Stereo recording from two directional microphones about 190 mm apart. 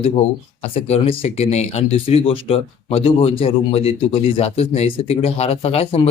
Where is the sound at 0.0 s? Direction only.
35° left (ahead or behind).